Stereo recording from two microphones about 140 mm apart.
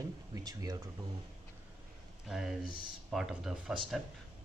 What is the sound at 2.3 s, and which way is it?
Speech, 5° right (ahead or behind).